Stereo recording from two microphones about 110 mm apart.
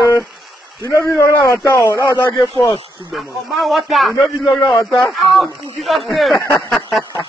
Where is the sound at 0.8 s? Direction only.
25° left (ahead or behind).